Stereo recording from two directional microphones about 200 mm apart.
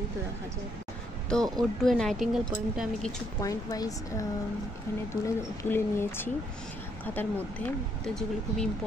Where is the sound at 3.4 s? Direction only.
15° left (ahead or behind).